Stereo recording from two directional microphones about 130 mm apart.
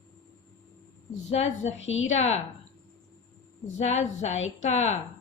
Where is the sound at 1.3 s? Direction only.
55° left (ahead or behind).